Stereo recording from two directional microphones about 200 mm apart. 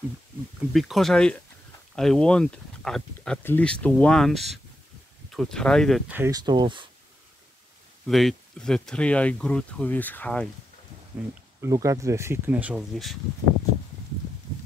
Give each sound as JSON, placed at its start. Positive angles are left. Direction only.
{"t": 0.7, "sound": "speech", "side_deg": 0}
{"t": 6.1, "sound": "speech", "side_deg": -15}
{"t": 8.1, "sound": "speech", "side_deg": 0}
{"t": 11.6, "sound": "speech", "side_deg": -15}